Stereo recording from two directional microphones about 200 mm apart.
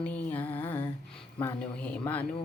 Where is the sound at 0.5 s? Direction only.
25° left (ahead or behind).